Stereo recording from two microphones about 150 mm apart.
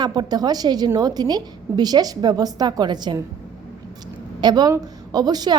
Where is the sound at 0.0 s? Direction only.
25° right (ahead or behind).